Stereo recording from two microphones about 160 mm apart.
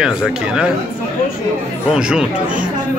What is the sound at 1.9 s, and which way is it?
Speech, 5° right (ahead or behind).